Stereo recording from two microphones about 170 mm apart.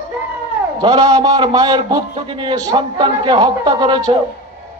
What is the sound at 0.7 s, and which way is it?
A man's voice, 25° right (ahead or behind).